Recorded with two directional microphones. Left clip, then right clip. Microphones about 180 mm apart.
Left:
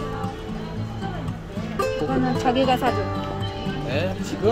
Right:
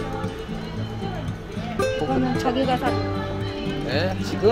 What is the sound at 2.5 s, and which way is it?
Speech, 65° left (ahead or behind).